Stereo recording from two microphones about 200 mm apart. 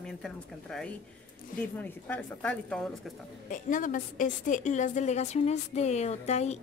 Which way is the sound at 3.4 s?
40° left (ahead or behind).